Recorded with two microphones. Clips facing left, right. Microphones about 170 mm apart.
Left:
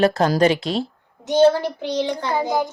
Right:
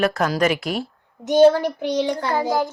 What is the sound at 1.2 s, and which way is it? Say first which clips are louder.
Speech: right 2 dB; 15° right (ahead or behind).